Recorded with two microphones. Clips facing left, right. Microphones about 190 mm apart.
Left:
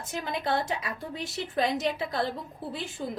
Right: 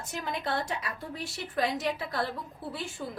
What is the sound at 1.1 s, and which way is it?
A woman's voice, 20° left (ahead or behind).